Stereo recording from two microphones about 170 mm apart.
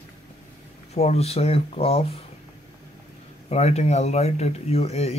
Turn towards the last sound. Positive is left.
turn(degrees=35)  # may be behind; listen again after turning